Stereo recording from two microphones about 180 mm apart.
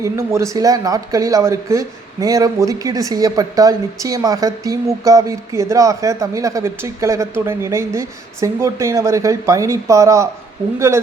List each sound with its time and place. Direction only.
0.0 s speech: 15° right (ahead or behind)